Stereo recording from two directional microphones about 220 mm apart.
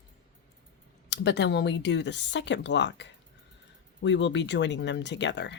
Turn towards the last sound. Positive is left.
turn(degrees=55)  # may be behind; listen again after turning